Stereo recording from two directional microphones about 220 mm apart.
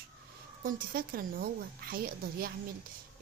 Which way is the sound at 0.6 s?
40° right (ahead or behind).